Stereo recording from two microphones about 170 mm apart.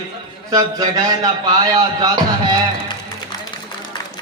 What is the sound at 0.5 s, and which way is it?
A man's voice, 20° right (ahead or behind).